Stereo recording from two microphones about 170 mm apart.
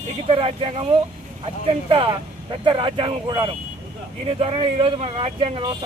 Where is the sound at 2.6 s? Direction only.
30° right (ahead or behind).